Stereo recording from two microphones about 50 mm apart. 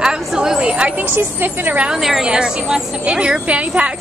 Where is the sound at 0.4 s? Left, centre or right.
Centre.